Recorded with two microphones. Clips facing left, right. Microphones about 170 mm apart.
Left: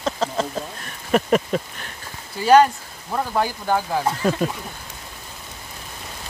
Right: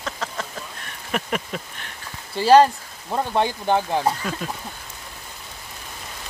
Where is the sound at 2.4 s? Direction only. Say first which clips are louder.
Even; 30° right (ahead or behind).